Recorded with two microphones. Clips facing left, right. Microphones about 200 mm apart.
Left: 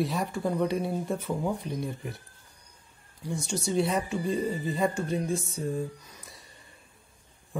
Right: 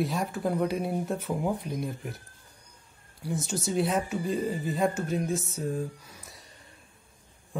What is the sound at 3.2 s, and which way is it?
Speech, 5° right (ahead or behind).